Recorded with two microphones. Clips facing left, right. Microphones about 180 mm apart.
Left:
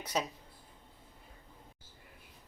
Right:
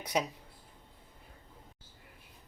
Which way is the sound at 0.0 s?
15° right (ahead or behind).